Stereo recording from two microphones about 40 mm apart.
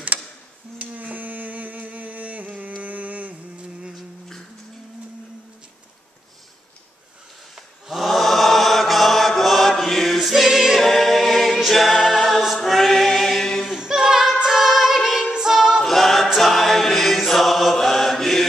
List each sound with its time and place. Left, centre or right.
0.7 s a sound: right
7.5 s chant: centre
10.9 s a capella: centre
12.6 s choir: centre
13.7 s a capella: centre
15.8 s a capella: centre
16.3 s choir: centre
17.7 s mantra: centre